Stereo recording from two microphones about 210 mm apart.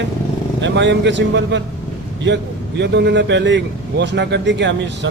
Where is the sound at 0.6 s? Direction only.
60° right (ahead or behind).